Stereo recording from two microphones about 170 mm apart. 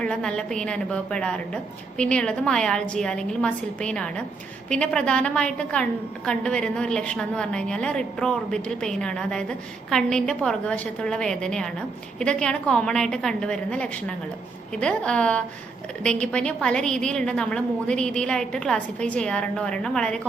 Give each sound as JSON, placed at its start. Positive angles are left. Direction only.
{"t": 0.0, "sound": "a woman's voice", "side_deg": 5}